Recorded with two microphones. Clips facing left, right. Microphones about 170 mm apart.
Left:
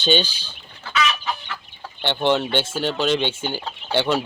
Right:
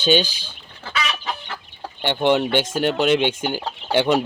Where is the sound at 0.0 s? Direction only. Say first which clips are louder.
Right 2 dB; 10° right (ahead or behind).